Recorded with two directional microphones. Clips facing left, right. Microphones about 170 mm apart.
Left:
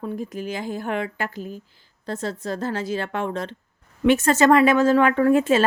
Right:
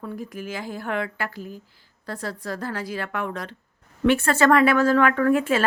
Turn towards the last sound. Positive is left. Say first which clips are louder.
# left 3 dB
turn(degrees=25)  # may be behind; listen again after turning